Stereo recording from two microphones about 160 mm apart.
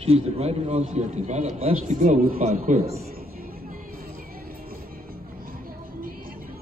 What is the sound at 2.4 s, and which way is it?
Speech, 40° right (ahead or behind).